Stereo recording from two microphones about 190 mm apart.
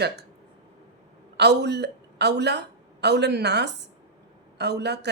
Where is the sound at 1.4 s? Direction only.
60° right (ahead or behind).